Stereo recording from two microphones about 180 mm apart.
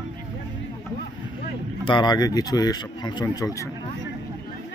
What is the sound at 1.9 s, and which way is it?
Speech, 25° left (ahead or behind).